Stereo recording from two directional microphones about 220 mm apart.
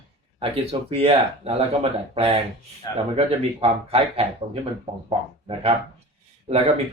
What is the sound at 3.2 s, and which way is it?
Speech, 25° right (ahead or behind).